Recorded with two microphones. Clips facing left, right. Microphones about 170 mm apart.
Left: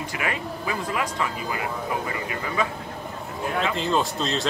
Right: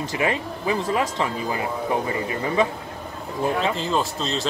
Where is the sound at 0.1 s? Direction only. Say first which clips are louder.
Right 6 dB; 25° right (ahead or behind).